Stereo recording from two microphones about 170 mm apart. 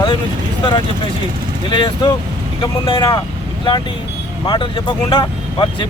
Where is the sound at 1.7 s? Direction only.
30° left (ahead or behind).